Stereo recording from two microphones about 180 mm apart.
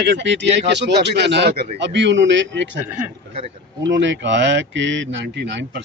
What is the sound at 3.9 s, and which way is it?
Speech, 90° right.